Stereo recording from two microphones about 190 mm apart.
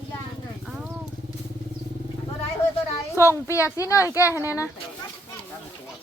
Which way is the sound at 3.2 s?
15° left (ahead or behind).